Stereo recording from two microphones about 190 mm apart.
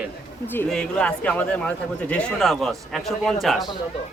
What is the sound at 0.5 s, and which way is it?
A man's voice, 5° left (ahead or behind).